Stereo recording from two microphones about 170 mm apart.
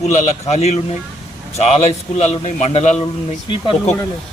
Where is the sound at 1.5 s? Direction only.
40° left (ahead or behind).